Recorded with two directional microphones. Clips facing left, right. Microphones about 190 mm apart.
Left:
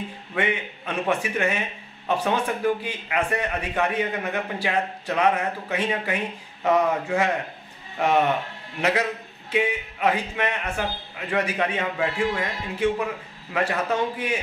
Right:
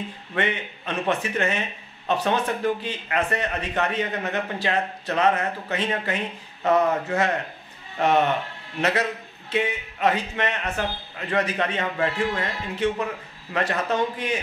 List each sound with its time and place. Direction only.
0.3 s a man's voice: 10° left (ahead or behind)
9.5 s a man's voice: 10° left (ahead or behind)